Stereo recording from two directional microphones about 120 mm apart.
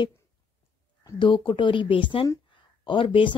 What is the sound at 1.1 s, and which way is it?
Speech, 40° left (ahead or behind).